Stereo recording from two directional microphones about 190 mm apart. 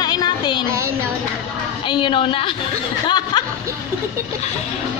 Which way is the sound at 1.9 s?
25° left (ahead or behind).